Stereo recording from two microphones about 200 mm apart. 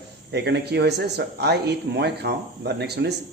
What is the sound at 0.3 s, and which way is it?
Speech, 55° right (ahead or behind).